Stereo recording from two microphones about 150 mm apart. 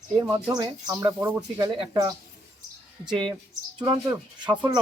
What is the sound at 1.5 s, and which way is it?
Speech, 30° right (ahead or behind).